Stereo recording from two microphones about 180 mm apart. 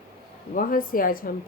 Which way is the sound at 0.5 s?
50° left (ahead or behind).